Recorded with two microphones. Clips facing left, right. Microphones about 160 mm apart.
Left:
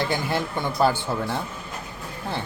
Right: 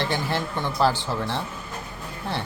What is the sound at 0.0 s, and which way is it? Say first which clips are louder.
Speech: left 1 dB; 5° left (ahead or behind).